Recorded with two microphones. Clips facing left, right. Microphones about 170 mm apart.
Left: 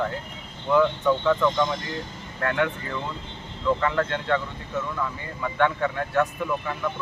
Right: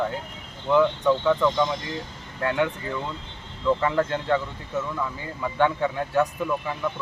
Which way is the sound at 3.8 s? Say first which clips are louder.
Right 1 dB; 20° right (ahead or behind).